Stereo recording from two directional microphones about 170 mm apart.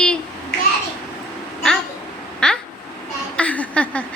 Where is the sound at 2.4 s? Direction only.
5° left (ahead or behind).